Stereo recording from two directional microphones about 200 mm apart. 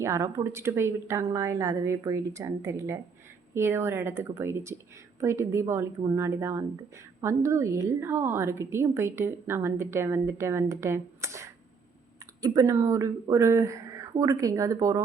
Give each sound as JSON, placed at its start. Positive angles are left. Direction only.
{"t": 0.0, "sound": "a woman's voice", "side_deg": -15}